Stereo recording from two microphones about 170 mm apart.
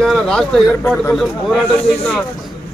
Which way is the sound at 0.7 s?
15° left (ahead or behind).